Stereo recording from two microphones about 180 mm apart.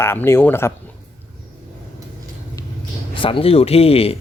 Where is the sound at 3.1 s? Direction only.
30° left (ahead or behind).